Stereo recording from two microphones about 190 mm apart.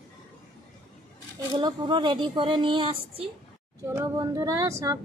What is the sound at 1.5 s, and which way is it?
Speech, 25° right (ahead or behind).